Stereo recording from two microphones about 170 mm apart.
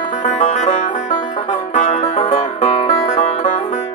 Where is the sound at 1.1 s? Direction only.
25° left (ahead or behind).